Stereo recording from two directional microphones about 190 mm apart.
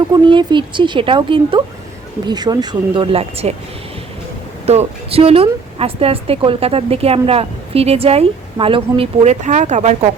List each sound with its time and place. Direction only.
0.1 s a woman's voice: 25° right (ahead or behind)
4.6 s speech: 35° right (ahead or behind)